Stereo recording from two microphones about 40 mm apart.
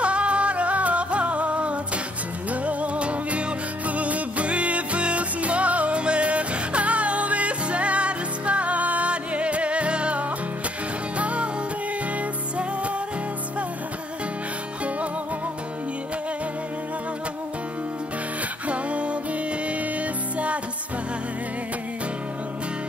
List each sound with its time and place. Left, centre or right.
0.0 s music: right
18.7 s music: right